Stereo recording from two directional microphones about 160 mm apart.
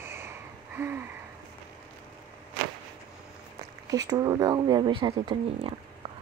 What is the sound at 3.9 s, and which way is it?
Speech, 25° right (ahead or behind).